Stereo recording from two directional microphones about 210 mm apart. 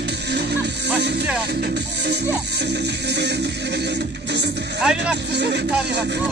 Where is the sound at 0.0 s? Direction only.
55° right (ahead or behind).